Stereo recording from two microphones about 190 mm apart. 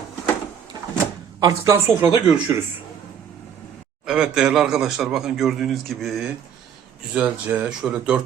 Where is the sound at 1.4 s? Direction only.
15° right (ahead or behind).